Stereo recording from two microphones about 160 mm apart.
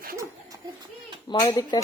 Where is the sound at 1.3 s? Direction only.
25° left (ahead or behind).